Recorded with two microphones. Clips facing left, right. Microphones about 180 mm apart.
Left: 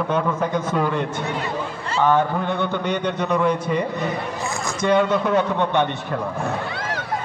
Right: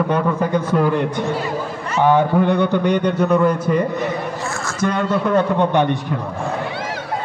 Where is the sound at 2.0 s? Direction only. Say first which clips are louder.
Right 5 dB; 15° right (ahead or behind).